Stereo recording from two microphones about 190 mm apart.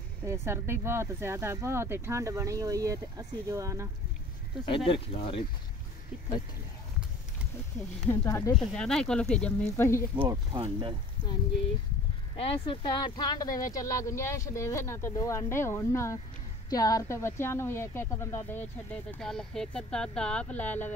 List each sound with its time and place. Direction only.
0.2 s speech: 15° right (ahead or behind)
4.6 s speech: 30° left (ahead or behind)
8.0 s a woman's voice: 10° left (ahead or behind)
8.5 s speech: 5° left (ahead or behind)
10.1 s speech: 20° right (ahead or behind)
12.6 s a woman's voice: 25° left (ahead or behind)